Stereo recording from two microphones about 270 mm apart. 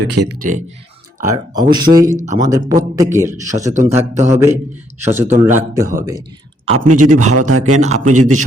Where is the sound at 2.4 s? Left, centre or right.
Centre.